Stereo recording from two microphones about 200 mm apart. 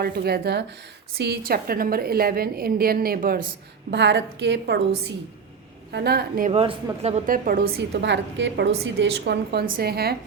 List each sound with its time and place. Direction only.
0.0 s a woman's voice: 50° right (ahead or behind)
3.9 s a woman's voice: 60° right (ahead or behind)
6.5 s speech: 25° right (ahead or behind)
7.0 s a woman's voice: 35° right (ahead or behind)